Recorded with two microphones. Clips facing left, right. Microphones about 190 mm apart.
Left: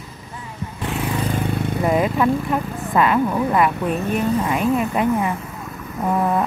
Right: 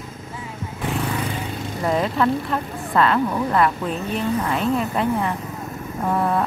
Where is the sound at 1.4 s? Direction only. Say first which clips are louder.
Left 6 dB; 60° left (ahead or behind).